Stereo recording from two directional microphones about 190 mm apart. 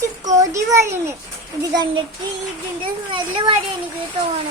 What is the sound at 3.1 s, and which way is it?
Speech, 25° right (ahead or behind).